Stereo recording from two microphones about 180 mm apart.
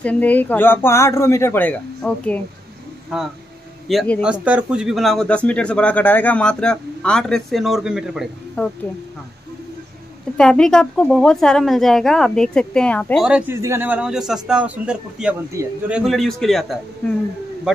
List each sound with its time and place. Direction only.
0.0 s speech: 10° left (ahead or behind)
3.9 s a man's voice: 5° left (ahead or behind)
4.2 s a man's voice: 5° right (ahead or behind)
10.3 s a man's voice: 5° left (ahead or behind)
13.3 s a man's voice: 10° right (ahead or behind)
15.6 s a man's voice: 15° right (ahead or behind)
15.9 s a man's voice: centre (ahead or behind)